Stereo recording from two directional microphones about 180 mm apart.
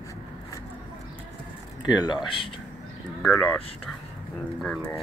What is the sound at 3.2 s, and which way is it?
Speech, 5° left (ahead or behind).